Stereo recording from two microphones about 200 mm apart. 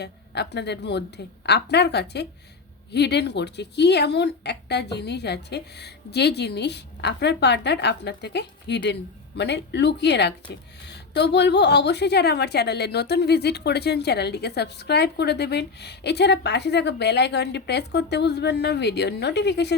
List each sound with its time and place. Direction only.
0.0 s a woman's voice: 55° left (ahead or behind)